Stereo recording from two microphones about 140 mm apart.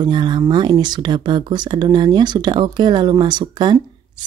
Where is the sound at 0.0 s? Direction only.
30° right (ahead or behind).